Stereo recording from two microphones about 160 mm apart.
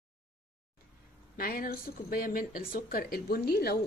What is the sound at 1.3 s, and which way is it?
Speech, 65° left (ahead or behind).